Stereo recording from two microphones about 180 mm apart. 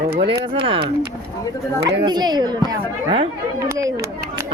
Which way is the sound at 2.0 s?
25° right (ahead or behind).